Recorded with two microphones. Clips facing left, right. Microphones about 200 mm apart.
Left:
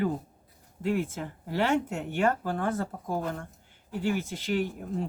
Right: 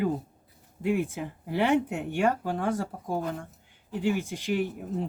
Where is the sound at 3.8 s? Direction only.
15° right (ahead or behind).